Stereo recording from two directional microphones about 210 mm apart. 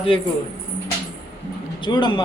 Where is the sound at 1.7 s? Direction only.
20° left (ahead or behind).